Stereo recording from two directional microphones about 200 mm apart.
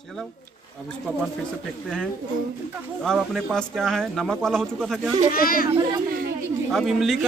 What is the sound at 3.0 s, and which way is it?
Speech, centre (ahead or behind).